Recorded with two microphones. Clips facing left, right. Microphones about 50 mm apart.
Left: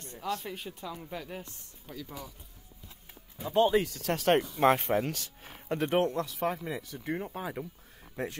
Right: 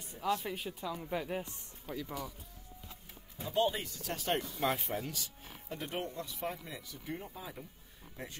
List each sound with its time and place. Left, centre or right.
0.0 s speech: centre
1.1 s speech: centre
3.7 s speech: left
4.6 s speech: left
6.6 s speech: left
8.2 s speech: left